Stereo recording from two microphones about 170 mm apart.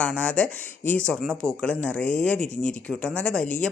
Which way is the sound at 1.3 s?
15° right (ahead or behind).